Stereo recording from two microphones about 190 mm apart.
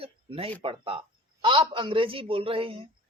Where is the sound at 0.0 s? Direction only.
30° right (ahead or behind).